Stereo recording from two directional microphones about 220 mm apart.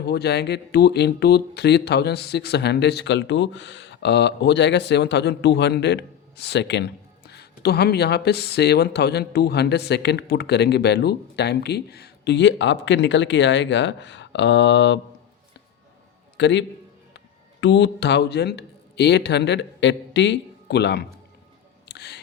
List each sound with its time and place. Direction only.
0.1 s speech: 50° left (ahead or behind)
16.4 s a man's voice: 55° left (ahead or behind)
21.8 s music: 50° left (ahead or behind)